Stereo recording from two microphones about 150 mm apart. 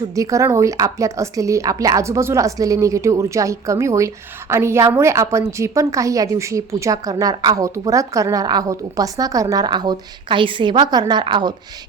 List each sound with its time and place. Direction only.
0.1 s speech: 20° right (ahead or behind)